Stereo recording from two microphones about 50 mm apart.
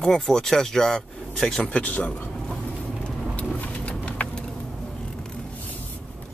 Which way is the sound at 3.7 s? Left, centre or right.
Left.